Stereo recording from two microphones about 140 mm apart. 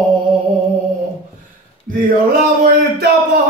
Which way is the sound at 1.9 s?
90° right.